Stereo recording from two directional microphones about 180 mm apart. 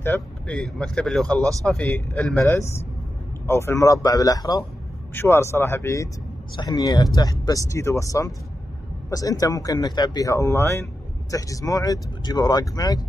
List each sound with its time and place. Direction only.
0.0 s speech: 10° left (ahead or behind)